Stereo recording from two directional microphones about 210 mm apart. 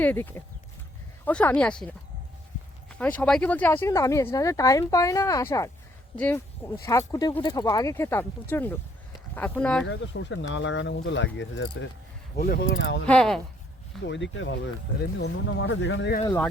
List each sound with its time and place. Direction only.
0.0 s speech: 10° left (ahead or behind)
9.8 s speech: 60° left (ahead or behind); by 12.6 s 45° left (ahead or behind)
12.6 s speech: 60° left (ahead or behind)
13.1 s speech: 5° left (ahead or behind)
14.0 s speech: 60° left (ahead or behind)
15.6 s speech: 60° left (ahead or behind)
16.2 s speech: 10° left (ahead or behind)